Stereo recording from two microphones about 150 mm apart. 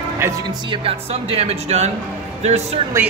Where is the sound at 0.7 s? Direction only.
40° right (ahead or behind).